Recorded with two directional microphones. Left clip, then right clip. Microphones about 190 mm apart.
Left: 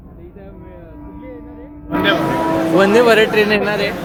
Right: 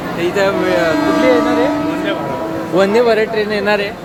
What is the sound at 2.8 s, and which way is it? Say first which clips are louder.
Speech: even; 10° right (ahead or behind).